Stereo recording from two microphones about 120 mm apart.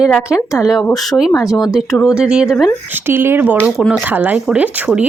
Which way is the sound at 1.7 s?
5° right (ahead or behind).